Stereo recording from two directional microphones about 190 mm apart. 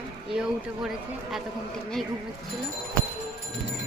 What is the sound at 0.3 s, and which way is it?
Speech, 5° right (ahead or behind).